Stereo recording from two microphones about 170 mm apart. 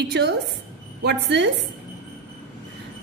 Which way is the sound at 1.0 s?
90° right.